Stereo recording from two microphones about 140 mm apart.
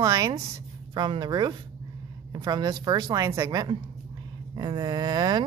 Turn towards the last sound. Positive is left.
turn(degrees=-30)  # may be behind; listen again after turning